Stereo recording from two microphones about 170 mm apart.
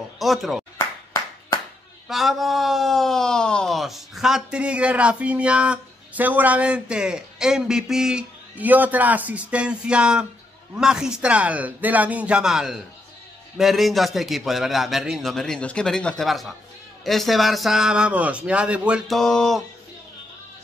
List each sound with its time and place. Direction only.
0.2 s speech: centre (ahead or behind)
0.7 s clapping: 20° left (ahead or behind)
2.0 s speech: centre (ahead or behind)